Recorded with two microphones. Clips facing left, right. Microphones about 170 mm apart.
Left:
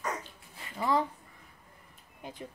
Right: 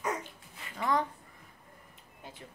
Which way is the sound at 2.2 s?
15° left (ahead or behind).